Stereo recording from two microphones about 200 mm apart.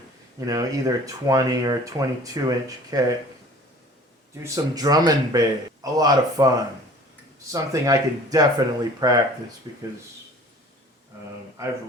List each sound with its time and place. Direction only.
0.3 s speech: 15° right (ahead or behind)
4.4 s speech: 20° right (ahead or behind)
7.5 s speech: 15° right (ahead or behind)